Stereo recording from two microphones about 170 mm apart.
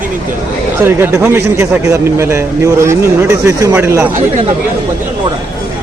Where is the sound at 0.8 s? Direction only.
15° right (ahead or behind).